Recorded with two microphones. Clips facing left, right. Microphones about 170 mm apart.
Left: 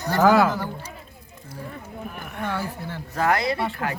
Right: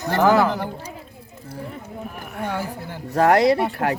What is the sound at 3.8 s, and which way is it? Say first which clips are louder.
Speech: right 6 dB; 50° right (ahead or behind).